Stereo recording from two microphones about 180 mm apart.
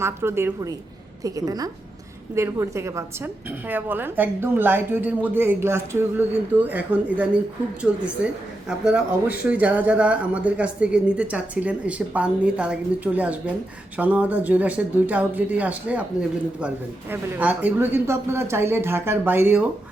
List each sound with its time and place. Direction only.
0.0 s a woman's voice: 15° right (ahead or behind)